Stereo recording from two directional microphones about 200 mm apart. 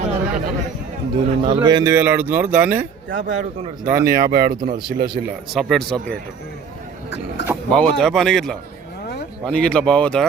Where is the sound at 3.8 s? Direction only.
15° right (ahead or behind).